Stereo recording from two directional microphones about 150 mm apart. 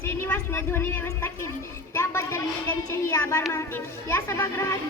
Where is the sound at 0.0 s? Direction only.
15° left (ahead or behind).